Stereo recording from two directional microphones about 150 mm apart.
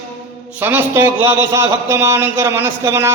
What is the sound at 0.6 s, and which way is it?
A man's voice, 15° right (ahead or behind).